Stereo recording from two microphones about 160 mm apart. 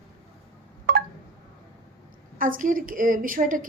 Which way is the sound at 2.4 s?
60° right (ahead or behind).